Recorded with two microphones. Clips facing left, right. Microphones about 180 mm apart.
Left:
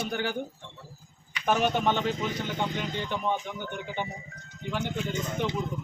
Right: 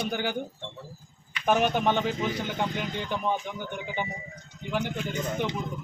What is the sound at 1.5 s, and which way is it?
Speech, 5° right (ahead or behind).